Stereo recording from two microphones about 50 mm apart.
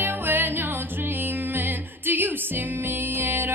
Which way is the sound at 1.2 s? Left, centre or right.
Right.